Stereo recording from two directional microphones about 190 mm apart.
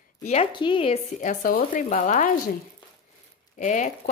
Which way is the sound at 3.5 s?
40° left (ahead or behind).